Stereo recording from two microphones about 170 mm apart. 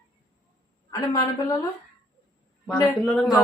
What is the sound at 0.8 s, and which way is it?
Speech, 20° left (ahead or behind).